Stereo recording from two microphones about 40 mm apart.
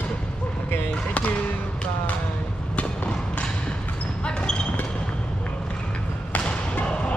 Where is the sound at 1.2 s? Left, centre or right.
Left.